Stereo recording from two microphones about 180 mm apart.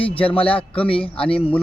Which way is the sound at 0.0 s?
30° left (ahead or behind).